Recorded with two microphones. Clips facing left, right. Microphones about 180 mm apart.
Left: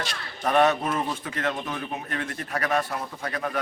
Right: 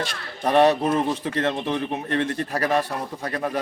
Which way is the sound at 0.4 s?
30° right (ahead or behind).